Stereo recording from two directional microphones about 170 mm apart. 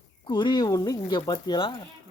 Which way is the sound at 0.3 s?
25° left (ahead or behind).